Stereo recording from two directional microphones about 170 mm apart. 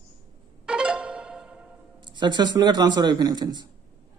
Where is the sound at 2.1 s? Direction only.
25° right (ahead or behind).